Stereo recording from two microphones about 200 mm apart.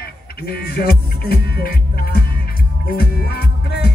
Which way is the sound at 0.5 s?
50° left (ahead or behind).